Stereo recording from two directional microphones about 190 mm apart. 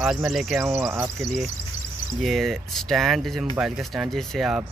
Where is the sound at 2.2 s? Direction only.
Centre (ahead or behind).